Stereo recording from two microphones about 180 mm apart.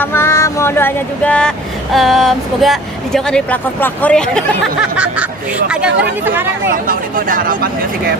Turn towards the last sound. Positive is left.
turn(degrees=-50)  # may be behind; listen again after turning